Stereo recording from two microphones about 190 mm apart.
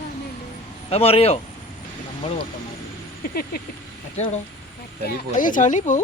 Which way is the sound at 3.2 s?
55° left (ahead or behind).